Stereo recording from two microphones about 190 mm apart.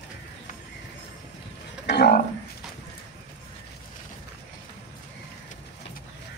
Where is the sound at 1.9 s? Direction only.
60° left (ahead or behind).